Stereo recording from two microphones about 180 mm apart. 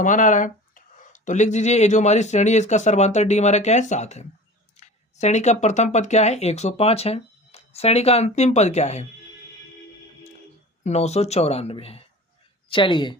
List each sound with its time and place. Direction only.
0.0 s speech: 45° left (ahead or behind)
10.8 s speech: 35° left (ahead or behind)